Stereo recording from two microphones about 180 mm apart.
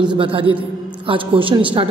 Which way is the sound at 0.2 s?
30° right (ahead or behind).